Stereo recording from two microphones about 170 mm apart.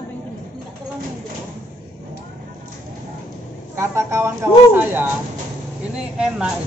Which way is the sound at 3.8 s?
15° right (ahead or behind).